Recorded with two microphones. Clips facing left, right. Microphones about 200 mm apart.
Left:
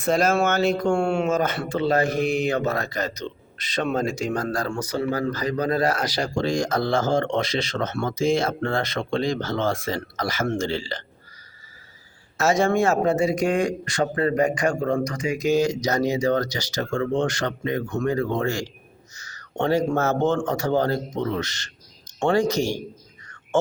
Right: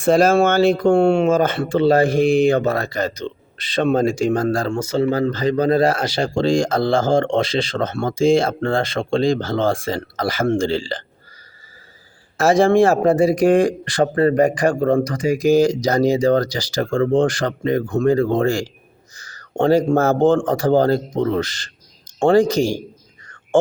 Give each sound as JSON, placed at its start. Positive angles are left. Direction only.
{"t": 0.0, "sound": "speech", "side_deg": -30}
{"t": 12.4, "sound": "a man's voice", "side_deg": -30}
{"t": 23.2, "sound": "a sound", "side_deg": -30}